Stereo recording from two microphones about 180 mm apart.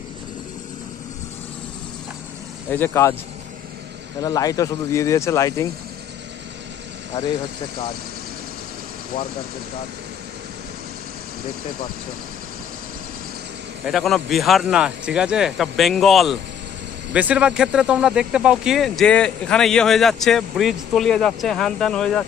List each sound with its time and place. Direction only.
2.7 s speech: 15° left (ahead or behind)
4.2 s speech: 20° left (ahead or behind)
13.8 s speech: centre (ahead or behind)